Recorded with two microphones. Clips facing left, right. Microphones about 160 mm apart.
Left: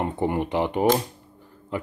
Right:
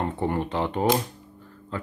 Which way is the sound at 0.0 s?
15° left (ahead or behind).